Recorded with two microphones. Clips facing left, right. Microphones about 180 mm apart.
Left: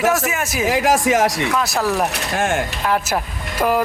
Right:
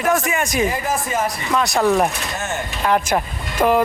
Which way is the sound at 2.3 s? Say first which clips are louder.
Left 6 dB; 90° left.